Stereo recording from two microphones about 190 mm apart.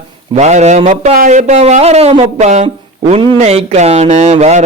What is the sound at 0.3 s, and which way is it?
A man's voice, 40° right (ahead or behind).